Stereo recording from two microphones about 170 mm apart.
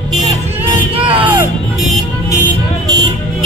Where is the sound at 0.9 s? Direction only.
30° right (ahead or behind).